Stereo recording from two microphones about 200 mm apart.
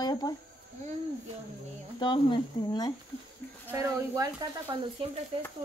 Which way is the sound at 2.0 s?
25° left (ahead or behind).